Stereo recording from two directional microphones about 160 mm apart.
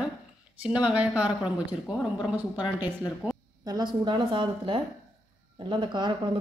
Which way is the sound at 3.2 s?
10° right (ahead or behind).